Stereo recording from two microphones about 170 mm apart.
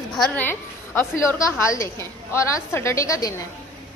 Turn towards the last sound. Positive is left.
turn(degrees=20)  # may be behind; listen again after turning